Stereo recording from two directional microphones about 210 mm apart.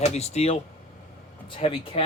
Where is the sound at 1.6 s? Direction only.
25° left (ahead or behind).